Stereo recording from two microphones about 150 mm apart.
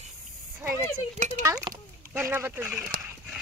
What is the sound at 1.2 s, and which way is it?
Speech, 55° right (ahead or behind).